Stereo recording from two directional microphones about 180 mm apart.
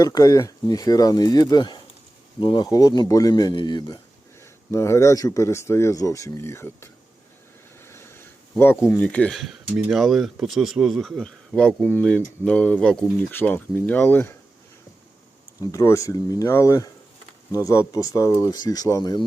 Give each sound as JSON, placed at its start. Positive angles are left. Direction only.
{"t": 0.0, "sound": "a man's voice", "side_deg": 20}
{"t": 7.8, "sound": "a sound", "side_deg": 15}
{"t": 8.9, "sound": "a man's voice", "side_deg": 5}
{"t": 15.6, "sound": "a man's voice", "side_deg": 15}